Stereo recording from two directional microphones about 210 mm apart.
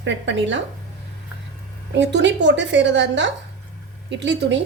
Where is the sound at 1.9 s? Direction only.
60° right (ahead or behind).